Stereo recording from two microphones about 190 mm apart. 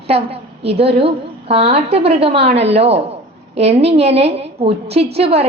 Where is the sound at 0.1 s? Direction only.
30° right (ahead or behind).